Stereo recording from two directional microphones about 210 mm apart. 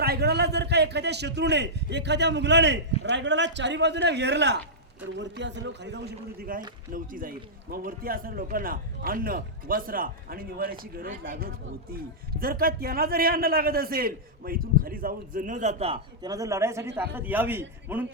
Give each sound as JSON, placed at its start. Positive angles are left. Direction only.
{"t": 0.0, "sound": "a man's voice", "side_deg": -50}